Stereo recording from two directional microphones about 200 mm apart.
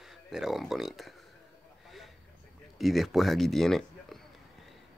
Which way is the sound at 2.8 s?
Centre (ahead or behind).